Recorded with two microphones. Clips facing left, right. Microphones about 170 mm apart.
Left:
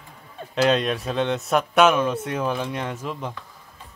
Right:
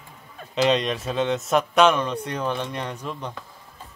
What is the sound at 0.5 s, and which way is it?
Speech, centre (ahead or behind).